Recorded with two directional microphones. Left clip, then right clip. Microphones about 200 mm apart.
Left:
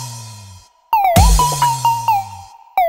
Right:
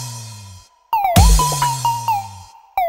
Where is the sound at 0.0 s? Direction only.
Centre (ahead or behind).